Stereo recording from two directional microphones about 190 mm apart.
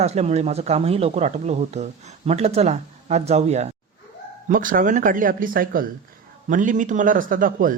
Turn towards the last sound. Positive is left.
turn(degrees=-45)  # may be behind; listen again after turning